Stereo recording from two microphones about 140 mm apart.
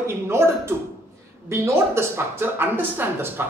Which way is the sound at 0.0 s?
20° right (ahead or behind).